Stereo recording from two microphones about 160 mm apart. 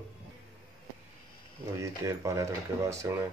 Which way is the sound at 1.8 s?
20° right (ahead or behind).